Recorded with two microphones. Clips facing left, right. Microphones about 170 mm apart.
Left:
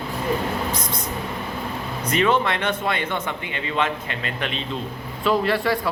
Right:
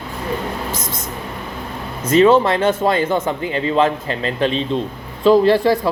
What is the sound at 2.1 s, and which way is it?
A man's voice, 35° right (ahead or behind).